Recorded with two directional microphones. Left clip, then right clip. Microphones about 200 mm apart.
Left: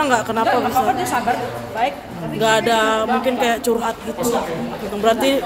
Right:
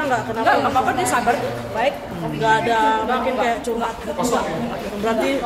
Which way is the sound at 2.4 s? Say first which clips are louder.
Left 1 dB; 55° left (ahead or behind).